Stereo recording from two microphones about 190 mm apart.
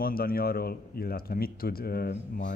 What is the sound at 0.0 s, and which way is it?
Speech, 50° left (ahead or behind).